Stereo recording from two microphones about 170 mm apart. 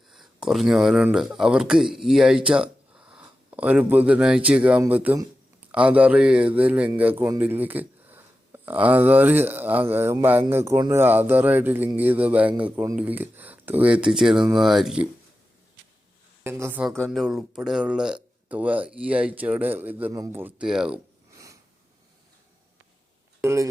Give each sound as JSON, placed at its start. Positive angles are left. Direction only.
{"t": 0.1, "sound": "speech", "side_deg": 0}
{"t": 16.4, "sound": "speech", "side_deg": -15}
{"t": 16.8, "sound": "speech", "side_deg": 0}
{"t": 21.3, "sound": "a sound", "side_deg": -20}
{"t": 23.4, "sound": "speech", "side_deg": -15}